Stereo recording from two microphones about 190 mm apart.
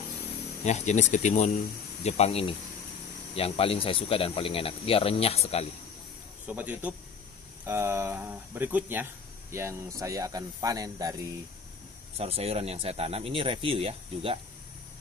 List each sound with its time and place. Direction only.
0.7 s speech: 35° left (ahead or behind)
6.4 s speech: 10° right (ahead or behind)
12.2 s speech: 30° right (ahead or behind)